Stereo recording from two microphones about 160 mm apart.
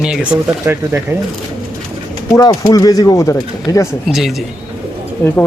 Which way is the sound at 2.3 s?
25° left (ahead or behind).